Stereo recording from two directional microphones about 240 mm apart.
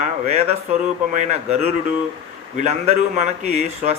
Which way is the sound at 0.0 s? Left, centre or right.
Right.